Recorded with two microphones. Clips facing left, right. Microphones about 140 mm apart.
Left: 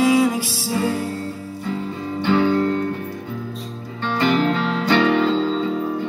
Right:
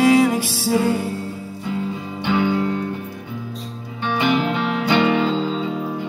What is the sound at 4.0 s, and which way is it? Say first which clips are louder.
Music: left 1 dB; 15° right (ahead or behind).